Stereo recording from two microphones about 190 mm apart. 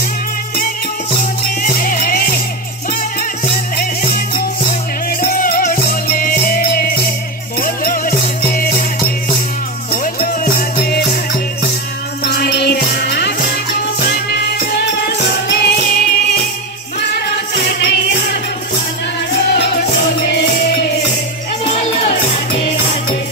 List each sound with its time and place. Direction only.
1.6 s music: 45° left (ahead or behind)
5.2 s music: 45° left (ahead or behind)
10.2 s music: 50° left (ahead or behind)
12.3 s music: 60° left (ahead or behind)
17.6 s music: 60° left (ahead or behind)